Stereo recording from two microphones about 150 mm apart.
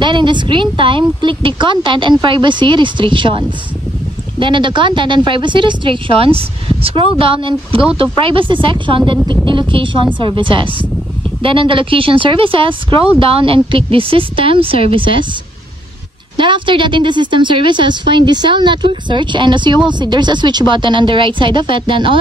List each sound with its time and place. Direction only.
0.0 s speech: 30° right (ahead or behind)
16.3 s speech: 35° right (ahead or behind)